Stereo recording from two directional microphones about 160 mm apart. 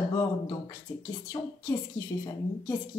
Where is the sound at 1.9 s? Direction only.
20° left (ahead or behind).